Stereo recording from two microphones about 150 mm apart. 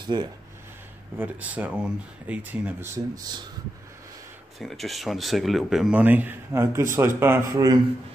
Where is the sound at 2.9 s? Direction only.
25° right (ahead or behind).